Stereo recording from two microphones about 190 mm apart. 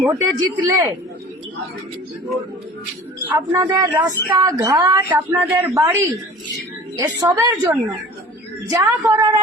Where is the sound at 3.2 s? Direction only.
10° right (ahead or behind).